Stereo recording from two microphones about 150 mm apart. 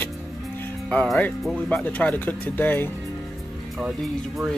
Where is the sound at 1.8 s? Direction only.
10° left (ahead or behind).